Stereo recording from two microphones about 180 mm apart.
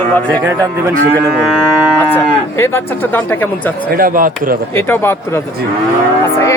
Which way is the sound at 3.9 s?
50° right (ahead or behind).